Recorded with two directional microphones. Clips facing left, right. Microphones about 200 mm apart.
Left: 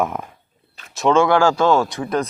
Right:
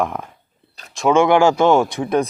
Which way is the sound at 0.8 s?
40° right (ahead or behind).